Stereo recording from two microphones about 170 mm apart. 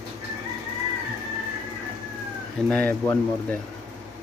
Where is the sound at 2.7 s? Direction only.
10° left (ahead or behind).